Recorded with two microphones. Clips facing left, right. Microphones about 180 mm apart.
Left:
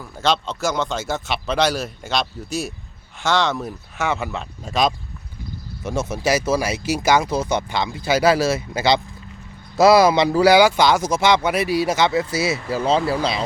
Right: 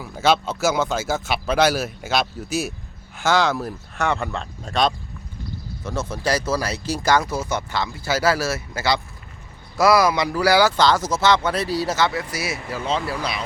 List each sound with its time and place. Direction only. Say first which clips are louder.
0.0 s speech: right 2 dB; 5° right (ahead or behind); by 13.4 s 30° left (ahead or behind)